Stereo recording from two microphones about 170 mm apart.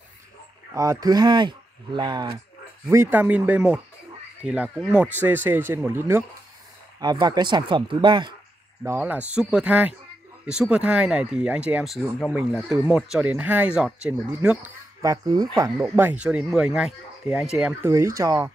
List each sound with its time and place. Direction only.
0.7 s speech: 20° right (ahead or behind)
2.9 s speech: 15° right (ahead or behind)
7.0 s speech: 25° right (ahead or behind)
8.8 s speech: 10° right (ahead or behind)
15.0 s speech: 20° right (ahead or behind)